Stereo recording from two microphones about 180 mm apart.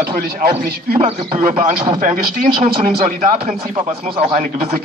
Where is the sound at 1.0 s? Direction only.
35° right (ahead or behind).